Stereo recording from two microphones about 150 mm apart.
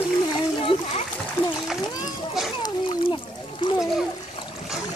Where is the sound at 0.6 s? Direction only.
35° left (ahead or behind).